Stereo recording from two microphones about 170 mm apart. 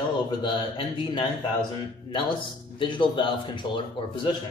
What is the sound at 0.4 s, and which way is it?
Speech, 25° left (ahead or behind).